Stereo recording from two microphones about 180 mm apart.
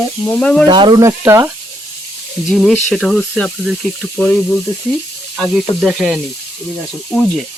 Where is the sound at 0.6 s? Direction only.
25° right (ahead or behind).